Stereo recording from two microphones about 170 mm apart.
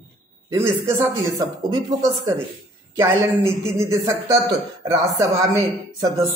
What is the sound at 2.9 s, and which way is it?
A man's voice, 15° right (ahead or behind).